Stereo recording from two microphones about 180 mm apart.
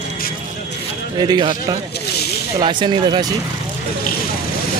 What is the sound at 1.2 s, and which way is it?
A man's voice, 25° right (ahead or behind).